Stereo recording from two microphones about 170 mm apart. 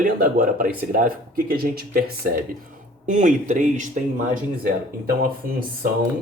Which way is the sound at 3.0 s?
45° right (ahead or behind).